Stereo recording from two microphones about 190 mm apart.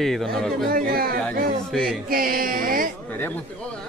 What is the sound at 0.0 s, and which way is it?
Speech, centre (ahead or behind).